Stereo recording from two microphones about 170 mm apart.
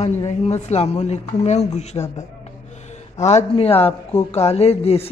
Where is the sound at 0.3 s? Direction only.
40° left (ahead or behind).